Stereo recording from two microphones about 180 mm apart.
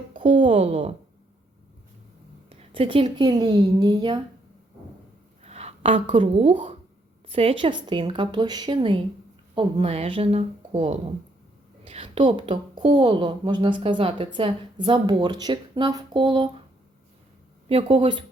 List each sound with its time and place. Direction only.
0.2 s speech: 30° right (ahead or behind)
2.5 s a woman's voice: 30° right (ahead or behind)
5.5 s a woman's voice: 35° right (ahead or behind)
17.7 s a woman's voice: 30° right (ahead or behind)